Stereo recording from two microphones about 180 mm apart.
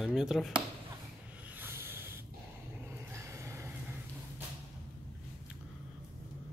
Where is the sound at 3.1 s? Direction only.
15° right (ahead or behind).